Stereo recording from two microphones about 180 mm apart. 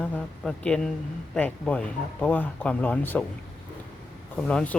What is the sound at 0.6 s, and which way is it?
Speech, 5° left (ahead or behind).